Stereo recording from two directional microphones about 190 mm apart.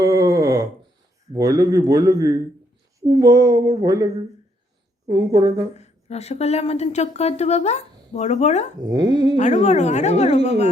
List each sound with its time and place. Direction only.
0.0 s a sound: 15° right (ahead or behind)
1.3 s a man's voice: 20° right (ahead or behind)
5.7 s speech: 35° left (ahead or behind)
8.9 s a man's voice: 20° right (ahead or behind)
9.4 s speech: 40° left (ahead or behind)